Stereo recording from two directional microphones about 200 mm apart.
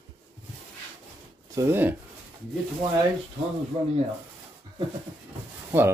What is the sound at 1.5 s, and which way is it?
Speech, 10° right (ahead or behind).